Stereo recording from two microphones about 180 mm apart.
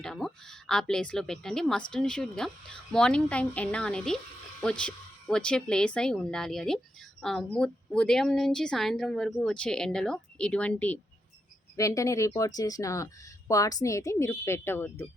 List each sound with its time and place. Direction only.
0.0 s a woman's voice: centre (ahead or behind)